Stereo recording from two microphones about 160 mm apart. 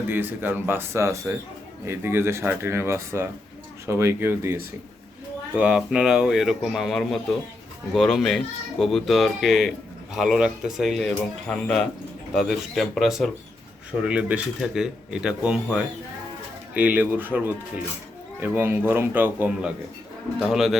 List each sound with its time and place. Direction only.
0.1 s speech: 10° right (ahead or behind)